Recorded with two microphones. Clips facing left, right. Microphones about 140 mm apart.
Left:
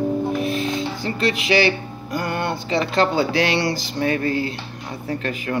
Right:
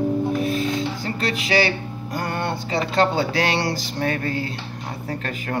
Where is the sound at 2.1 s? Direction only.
30° right (ahead or behind).